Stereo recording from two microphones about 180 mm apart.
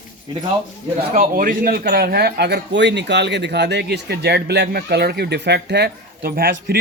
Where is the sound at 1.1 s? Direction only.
50° right (ahead or behind).